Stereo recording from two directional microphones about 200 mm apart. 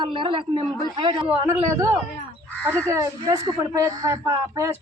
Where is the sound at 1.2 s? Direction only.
10° right (ahead or behind).